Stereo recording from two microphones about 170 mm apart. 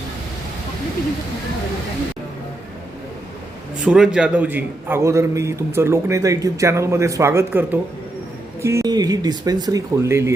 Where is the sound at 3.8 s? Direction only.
5° right (ahead or behind).